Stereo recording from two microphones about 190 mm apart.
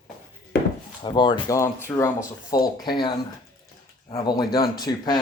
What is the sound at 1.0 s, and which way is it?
Speech, 25° left (ahead or behind).